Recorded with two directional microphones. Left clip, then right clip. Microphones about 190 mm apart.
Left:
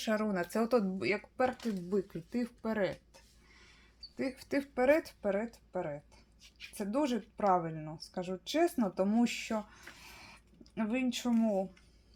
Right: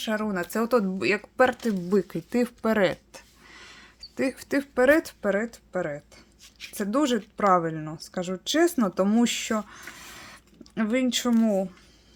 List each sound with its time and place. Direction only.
0.0 s speech: centre (ahead or behind)
0.5 s speech: 15° right (ahead or behind); by 11.8 s 30° right (ahead or behind)